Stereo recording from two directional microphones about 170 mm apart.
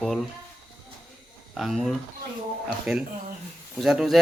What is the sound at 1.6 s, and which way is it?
Speech, centre (ahead or behind).